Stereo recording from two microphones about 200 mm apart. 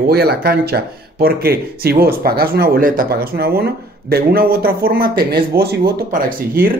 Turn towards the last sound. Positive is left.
turn(degrees=-45)  # may be behind; listen again after turning